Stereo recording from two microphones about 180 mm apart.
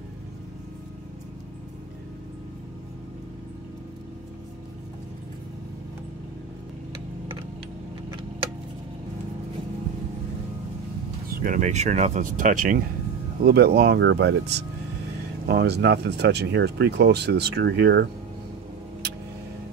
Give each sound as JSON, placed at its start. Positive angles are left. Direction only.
{"t": 11.2, "sound": "speech", "side_deg": -50}
{"t": 13.4, "sound": "speech", "side_deg": -60}